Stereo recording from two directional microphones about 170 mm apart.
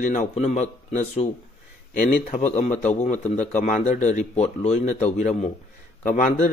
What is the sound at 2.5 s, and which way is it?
A man's voice, 40° left (ahead or behind).